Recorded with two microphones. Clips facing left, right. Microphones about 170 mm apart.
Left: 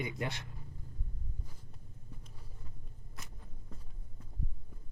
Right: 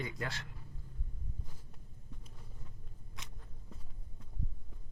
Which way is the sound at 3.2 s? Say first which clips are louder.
Left 1 dB; centre (ahead or behind).